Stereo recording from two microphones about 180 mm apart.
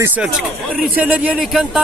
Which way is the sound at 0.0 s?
10° right (ahead or behind).